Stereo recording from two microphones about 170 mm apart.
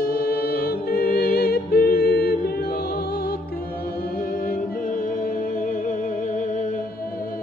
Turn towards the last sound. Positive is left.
turn(degrees=50)  # may be behind; listen again after turning